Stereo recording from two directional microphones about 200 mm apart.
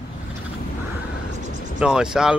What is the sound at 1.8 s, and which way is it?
Speech, 5° right (ahead or behind).